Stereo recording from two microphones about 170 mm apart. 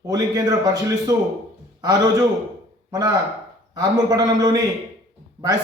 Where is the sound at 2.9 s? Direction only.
20° right (ahead or behind).